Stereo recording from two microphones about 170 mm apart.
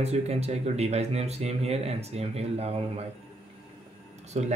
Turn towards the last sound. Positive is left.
turn(degrees=-40)  # may be behind; listen again after turning